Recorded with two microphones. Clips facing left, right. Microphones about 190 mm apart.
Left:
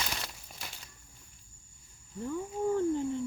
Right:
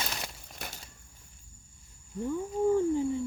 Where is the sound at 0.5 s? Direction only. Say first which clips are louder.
Right 4 dB; 55° right (ahead or behind).